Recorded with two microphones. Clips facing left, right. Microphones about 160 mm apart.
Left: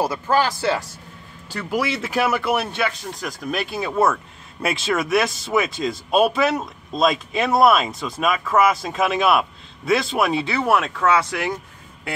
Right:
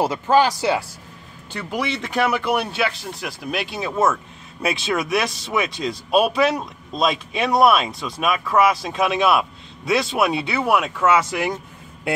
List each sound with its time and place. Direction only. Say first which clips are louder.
0.0 s speech: right 3 dB; 20° right (ahead or behind)
1.5 s speech: left 2 dB; centre (ahead or behind)